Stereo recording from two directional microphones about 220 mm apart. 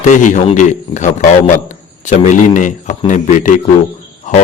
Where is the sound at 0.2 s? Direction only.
35° left (ahead or behind).